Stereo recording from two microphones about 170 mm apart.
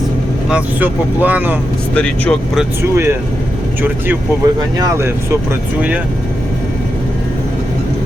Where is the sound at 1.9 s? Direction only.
5° left (ahead or behind).